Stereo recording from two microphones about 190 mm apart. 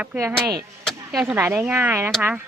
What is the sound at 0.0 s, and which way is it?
Speech, 10° right (ahead or behind).